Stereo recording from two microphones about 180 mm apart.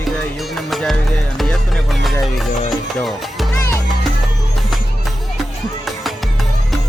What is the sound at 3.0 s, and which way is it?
Speech, centre (ahead or behind).